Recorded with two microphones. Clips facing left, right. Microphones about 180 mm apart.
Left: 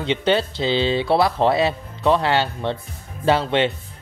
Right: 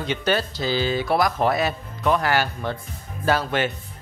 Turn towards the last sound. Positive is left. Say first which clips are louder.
# left 4 dB
turn(degrees=25)  # may be behind; listen again after turning